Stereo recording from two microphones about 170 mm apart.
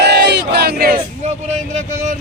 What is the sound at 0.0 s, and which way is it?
Battle cry, 75° right (ahead or behind).